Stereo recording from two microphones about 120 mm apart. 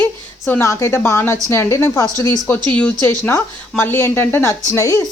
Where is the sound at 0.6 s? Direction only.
25° left (ahead or behind).